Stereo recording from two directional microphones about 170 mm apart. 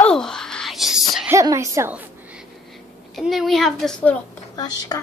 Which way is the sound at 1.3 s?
20° right (ahead or behind).